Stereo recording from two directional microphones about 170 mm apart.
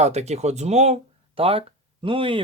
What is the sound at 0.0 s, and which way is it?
Speech, 40° right (ahead or behind).